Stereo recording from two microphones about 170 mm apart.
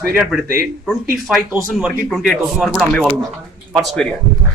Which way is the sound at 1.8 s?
Centre (ahead or behind).